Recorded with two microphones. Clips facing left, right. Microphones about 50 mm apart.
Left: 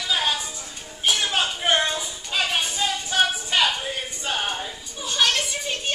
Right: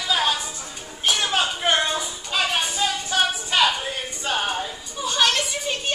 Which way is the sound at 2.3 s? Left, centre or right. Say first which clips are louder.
Right 1 dB; centre.